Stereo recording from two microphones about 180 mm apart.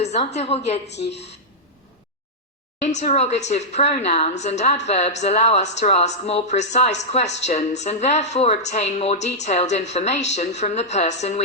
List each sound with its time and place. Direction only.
0.0 s speech: 35° left (ahead or behind)
0.9 s speech: 70° left (ahead or behind)
2.8 s speech: 40° left (ahead or behind)